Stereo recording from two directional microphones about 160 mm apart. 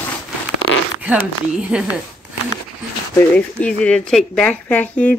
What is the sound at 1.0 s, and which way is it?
Speech, 5° right (ahead or behind).